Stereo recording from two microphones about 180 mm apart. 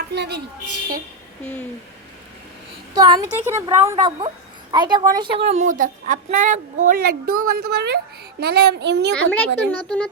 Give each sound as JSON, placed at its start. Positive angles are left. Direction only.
{"t": 0.1, "sound": "a woman's voice", "side_deg": -70}
{"t": 2.9, "sound": "a woman's voice", "side_deg": -20}
{"t": 9.1, "sound": "speech", "side_deg": 10}